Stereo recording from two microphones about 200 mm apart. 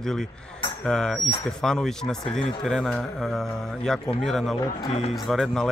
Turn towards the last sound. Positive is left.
turn(degrees=0)  # may be behind; listen again after turning